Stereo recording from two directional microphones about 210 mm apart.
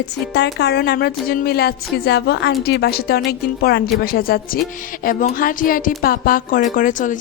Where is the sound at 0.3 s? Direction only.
55° left (ahead or behind).